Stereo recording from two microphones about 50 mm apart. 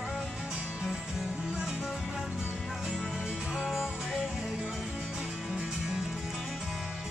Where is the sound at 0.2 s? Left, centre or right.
Centre.